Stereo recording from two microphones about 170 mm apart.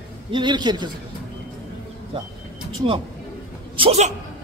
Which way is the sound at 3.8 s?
40° right (ahead or behind).